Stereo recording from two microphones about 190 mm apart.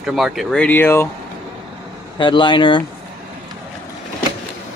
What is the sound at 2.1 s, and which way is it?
Speech, 25° left (ahead or behind).